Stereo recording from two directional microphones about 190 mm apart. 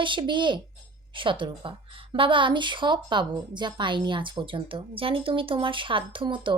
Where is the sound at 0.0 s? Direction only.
25° right (ahead or behind).